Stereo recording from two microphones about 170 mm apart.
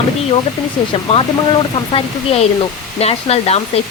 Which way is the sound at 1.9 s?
35° left (ahead or behind).